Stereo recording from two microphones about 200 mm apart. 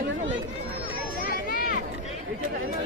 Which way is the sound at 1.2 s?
45° left (ahead or behind).